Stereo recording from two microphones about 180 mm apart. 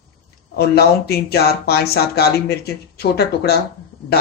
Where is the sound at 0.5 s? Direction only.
60° left (ahead or behind).